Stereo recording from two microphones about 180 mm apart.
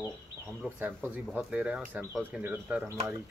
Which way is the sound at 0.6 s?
10° right (ahead or behind).